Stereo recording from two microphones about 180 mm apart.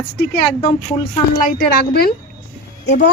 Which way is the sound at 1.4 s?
60° left (ahead or behind).